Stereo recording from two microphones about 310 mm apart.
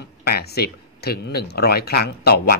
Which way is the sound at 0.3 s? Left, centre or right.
Left.